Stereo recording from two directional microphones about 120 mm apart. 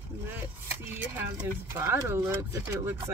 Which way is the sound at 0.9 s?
15° right (ahead or behind).